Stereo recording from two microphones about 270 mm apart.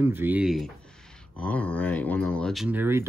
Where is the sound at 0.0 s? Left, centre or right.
Centre.